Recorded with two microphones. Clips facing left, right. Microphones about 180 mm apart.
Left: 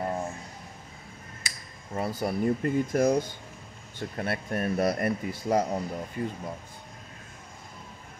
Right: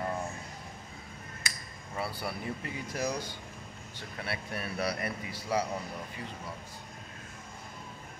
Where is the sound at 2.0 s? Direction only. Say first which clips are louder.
Left 8 dB; 45° left (ahead or behind).